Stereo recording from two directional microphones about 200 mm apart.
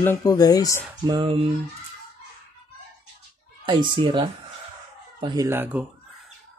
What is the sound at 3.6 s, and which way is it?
Speech, 25° right (ahead or behind).